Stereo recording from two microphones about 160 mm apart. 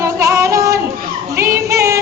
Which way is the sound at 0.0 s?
20° right (ahead or behind).